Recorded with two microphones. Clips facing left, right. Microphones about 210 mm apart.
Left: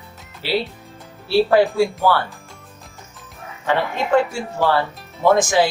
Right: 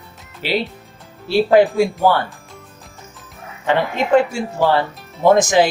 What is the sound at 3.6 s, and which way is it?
Speech, 20° right (ahead or behind).